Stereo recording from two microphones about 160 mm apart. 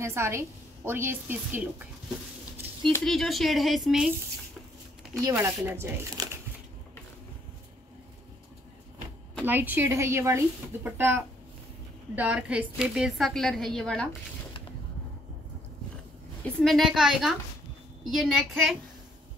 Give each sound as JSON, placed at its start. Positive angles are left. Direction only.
{"t": 0.0, "sound": "a woman's voice", "side_deg": -15}
{"t": 3.0, "sound": "a woman's voice", "side_deg": 0}
{"t": 5.2, "sound": "a woman's voice", "side_deg": -20}
{"t": 9.4, "sound": "a woman's voice", "side_deg": -10}
{"t": 16.4, "sound": "a woman's voice", "side_deg": 0}